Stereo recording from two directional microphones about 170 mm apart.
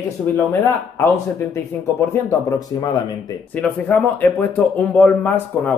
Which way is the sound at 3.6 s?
10° left (ahead or behind).